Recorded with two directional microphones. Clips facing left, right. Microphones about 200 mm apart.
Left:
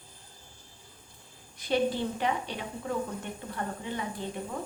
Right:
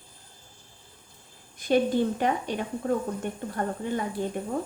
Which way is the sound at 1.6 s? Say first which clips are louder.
Right 5 dB; 50° right (ahead or behind).